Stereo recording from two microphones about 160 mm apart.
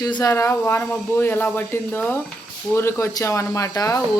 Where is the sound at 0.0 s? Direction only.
25° left (ahead or behind).